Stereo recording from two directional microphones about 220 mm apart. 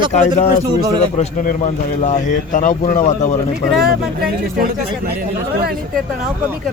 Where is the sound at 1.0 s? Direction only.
35° left (ahead or behind).